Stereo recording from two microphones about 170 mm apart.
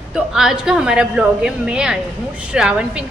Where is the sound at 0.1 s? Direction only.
5° right (ahead or behind).